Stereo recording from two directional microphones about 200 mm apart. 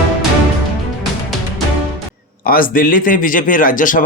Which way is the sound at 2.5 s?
45° left (ahead or behind).